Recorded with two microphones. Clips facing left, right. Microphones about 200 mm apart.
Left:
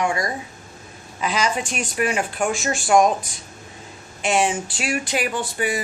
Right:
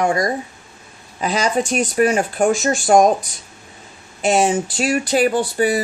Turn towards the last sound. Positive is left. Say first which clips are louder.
# right 7 dB
turn(degrees=-35)  # may be behind; listen again after turning